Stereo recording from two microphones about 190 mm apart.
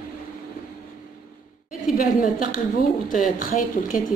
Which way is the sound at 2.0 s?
45° left (ahead or behind).